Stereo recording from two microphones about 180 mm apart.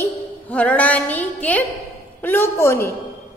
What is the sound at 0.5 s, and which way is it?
A woman's voice, 10° left (ahead or behind).